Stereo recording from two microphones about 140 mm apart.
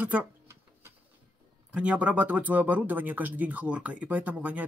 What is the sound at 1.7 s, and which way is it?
Speech, 10° right (ahead or behind).